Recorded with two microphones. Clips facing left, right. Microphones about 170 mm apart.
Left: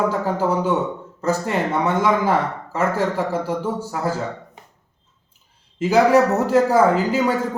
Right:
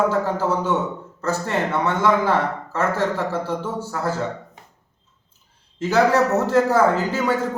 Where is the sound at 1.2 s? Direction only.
15° left (ahead or behind).